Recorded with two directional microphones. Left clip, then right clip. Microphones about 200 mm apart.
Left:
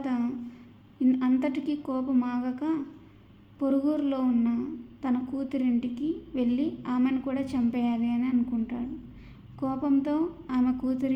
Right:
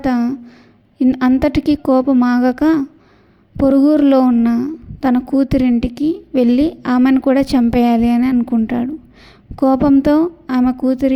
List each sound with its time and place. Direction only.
0.0 s a woman's voice: 35° right (ahead or behind)